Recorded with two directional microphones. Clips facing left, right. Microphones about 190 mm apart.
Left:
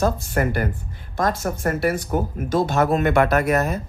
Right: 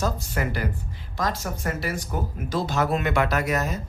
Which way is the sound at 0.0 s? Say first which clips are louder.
Left 6 dB; 50° left (ahead or behind).